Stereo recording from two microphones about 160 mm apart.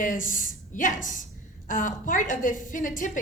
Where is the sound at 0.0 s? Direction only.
55° left (ahead or behind).